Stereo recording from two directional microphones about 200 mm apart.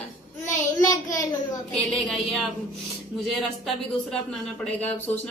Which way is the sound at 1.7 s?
Centre (ahead or behind).